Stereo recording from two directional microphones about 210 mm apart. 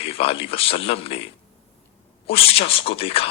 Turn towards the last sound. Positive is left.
turn(degrees=25)  # may be behind; listen again after turning